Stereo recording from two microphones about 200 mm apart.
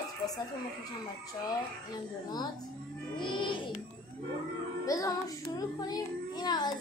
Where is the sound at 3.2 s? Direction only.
25° left (ahead or behind).